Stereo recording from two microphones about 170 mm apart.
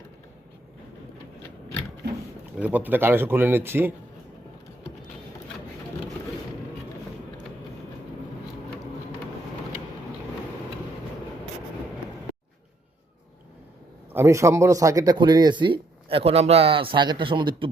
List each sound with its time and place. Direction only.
2.6 s speech: 10° right (ahead or behind)
14.1 s a man's voice: 15° right (ahead or behind)